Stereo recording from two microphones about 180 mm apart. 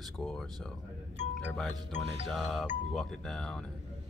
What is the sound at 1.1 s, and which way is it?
Music, 40° left (ahead or behind).